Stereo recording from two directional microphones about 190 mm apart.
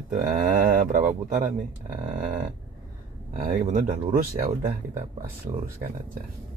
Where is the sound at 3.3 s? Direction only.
45° right (ahead or behind).